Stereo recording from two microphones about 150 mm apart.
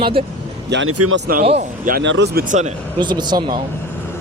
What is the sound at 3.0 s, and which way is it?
Speech, 30° right (ahead or behind).